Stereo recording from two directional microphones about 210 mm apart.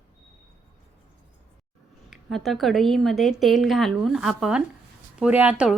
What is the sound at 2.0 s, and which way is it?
A woman's voice, centre (ahead or behind).